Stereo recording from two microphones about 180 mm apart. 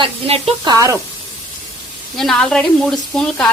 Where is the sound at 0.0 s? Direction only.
30° right (ahead or behind).